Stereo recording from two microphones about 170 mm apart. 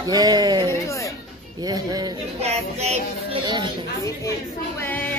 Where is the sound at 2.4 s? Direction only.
40° right (ahead or behind).